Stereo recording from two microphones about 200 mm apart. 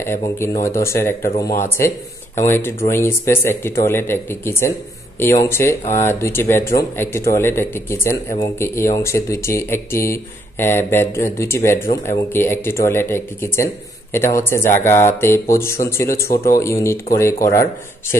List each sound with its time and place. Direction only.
0.0 s speech: 15° left (ahead or behind)
2.4 s speech: 10° left (ahead or behind)